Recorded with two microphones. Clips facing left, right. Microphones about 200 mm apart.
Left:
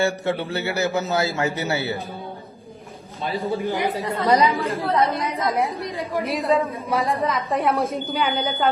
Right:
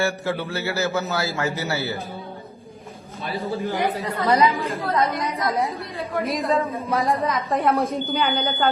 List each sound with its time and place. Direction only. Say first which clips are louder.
0.0 s a man's voice: left 2 dB; 20° left (ahead or behind)
3.6 s a man's voice: even; 15° left (ahead or behind)
5.3 s a woman's voice: left 1 dB; centre (ahead or behind)
5.6 s a man's voice: left 2 dB; 15° left (ahead or behind)
6.3 s a woman's voice: left 3 dB; centre (ahead or behind)